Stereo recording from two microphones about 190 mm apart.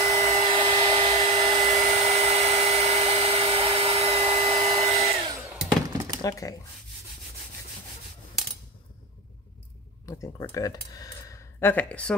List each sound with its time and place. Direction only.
0.0 s hair dryer: 35° right (ahead or behind)
6.2 s speech: 15° left (ahead or behind)
10.0 s speech: 15° left (ahead or behind)